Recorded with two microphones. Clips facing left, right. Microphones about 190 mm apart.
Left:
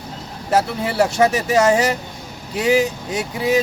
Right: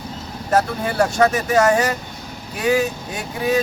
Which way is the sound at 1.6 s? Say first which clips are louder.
Left 1 dB; 20° left (ahead or behind).